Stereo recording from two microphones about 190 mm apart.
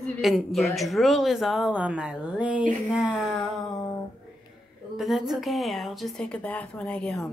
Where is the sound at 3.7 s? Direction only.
20° left (ahead or behind).